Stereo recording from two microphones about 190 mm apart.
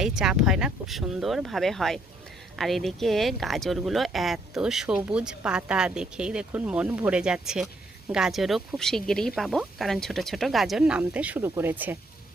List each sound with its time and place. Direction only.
0.0 s speech: 5° right (ahead or behind)